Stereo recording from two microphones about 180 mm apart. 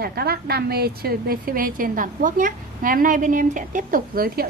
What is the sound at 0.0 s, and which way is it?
A woman's voice, 60° right (ahead or behind).